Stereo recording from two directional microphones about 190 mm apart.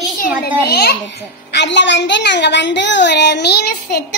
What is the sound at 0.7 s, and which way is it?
Speech, 55° left (ahead or behind).